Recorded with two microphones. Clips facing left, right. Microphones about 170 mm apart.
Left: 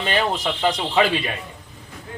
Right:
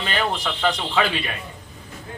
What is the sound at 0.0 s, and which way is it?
Speech, 20° left (ahead or behind).